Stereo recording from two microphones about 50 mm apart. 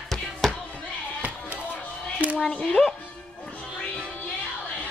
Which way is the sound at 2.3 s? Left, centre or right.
Left.